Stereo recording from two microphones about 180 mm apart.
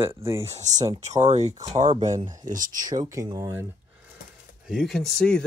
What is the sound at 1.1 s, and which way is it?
Speech, 40° right (ahead or behind).